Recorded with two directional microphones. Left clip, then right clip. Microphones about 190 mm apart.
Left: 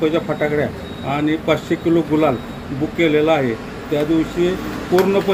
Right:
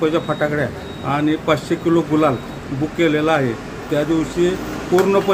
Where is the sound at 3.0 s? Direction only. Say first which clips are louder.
Left 1 dB; 15° right (ahead or behind).